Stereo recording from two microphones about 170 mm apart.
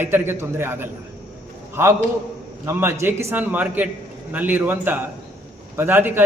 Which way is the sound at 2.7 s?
15° right (ahead or behind).